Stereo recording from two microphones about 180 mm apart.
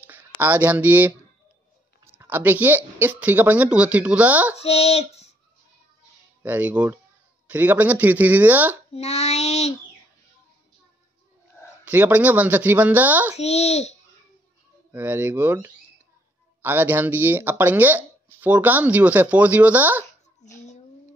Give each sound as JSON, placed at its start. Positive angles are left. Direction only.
{"t": 0.0, "sound": "speech", "side_deg": -10}
{"t": 2.1, "sound": "speech", "side_deg": -10}
{"t": 4.6, "sound": "child singing", "side_deg": 35}
{"t": 6.4, "sound": "speech", "side_deg": -10}
{"t": 8.9, "sound": "child singing", "side_deg": 35}
{"t": 11.8, "sound": "speech", "side_deg": -10}
{"t": 13.4, "sound": "child singing", "side_deg": 35}
{"t": 14.9, "sound": "speech", "side_deg": -10}